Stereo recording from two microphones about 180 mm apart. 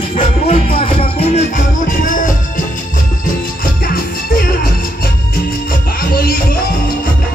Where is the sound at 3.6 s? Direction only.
50° left (ahead or behind).